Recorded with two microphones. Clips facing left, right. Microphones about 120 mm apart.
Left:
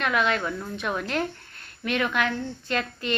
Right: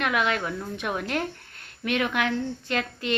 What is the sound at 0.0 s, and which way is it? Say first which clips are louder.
A woman's voice: left 1 dB; 60° right (ahead or behind).